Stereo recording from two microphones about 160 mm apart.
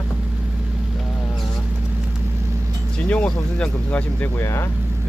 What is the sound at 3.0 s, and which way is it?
Speech, 5° left (ahead or behind).